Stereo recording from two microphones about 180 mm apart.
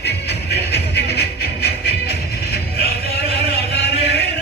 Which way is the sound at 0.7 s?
65° left (ahead or behind).